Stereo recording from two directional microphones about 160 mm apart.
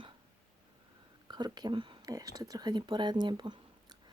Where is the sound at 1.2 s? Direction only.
25° right (ahead or behind).